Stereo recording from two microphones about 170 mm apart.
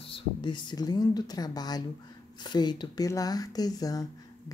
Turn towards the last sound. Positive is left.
turn(degrees=20)  # may be behind; listen again after turning